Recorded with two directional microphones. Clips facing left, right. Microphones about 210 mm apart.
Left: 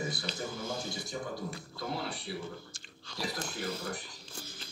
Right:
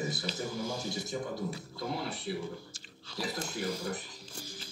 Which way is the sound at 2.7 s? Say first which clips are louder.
Right 2 dB; 5° right (ahead or behind).